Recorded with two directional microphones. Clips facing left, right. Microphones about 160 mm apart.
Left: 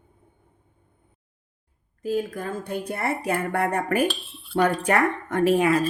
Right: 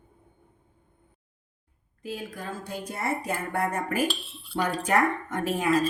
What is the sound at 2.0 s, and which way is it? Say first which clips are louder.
Speech: left 9 dB; 45° left (ahead or behind).